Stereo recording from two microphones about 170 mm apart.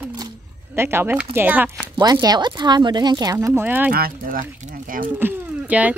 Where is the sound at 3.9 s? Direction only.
60° right (ahead or behind).